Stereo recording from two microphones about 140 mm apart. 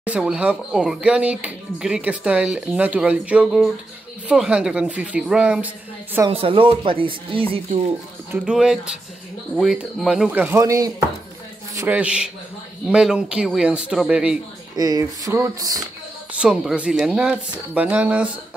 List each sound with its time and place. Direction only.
0.0 s speech: 10° right (ahead or behind)
6.3 s speech: 40° right (ahead or behind)
8.3 s speech: 5° right (ahead or behind)
14.8 s speech: 25° right (ahead or behind)
16.3 s speech: 5° right (ahead or behind)